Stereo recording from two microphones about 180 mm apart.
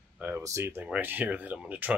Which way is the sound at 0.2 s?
15° right (ahead or behind).